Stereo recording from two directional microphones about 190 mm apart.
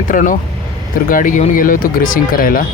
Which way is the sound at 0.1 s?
45° left (ahead or behind).